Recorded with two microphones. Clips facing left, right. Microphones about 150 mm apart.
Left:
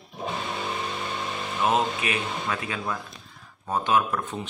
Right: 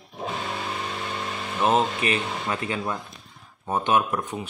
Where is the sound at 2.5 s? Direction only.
25° right (ahead or behind).